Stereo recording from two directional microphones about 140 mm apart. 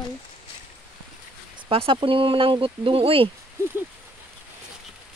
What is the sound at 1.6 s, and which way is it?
Speech, 40° right (ahead or behind).